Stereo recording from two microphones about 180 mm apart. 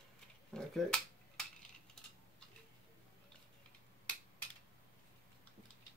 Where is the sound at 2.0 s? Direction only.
Centre (ahead or behind).